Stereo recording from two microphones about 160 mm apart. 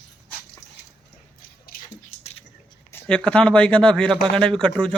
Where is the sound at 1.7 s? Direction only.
65° left (ahead or behind).